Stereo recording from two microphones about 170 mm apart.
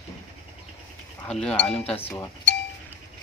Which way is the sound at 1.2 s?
5° left (ahead or behind).